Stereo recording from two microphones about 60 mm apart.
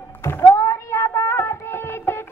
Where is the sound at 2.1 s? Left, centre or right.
Left.